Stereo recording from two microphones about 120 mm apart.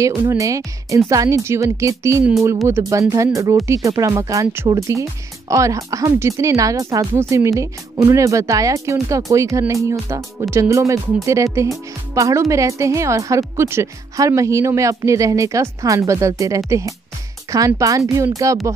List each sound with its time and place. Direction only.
0.2 s a woman's voice: 25° right (ahead or behind)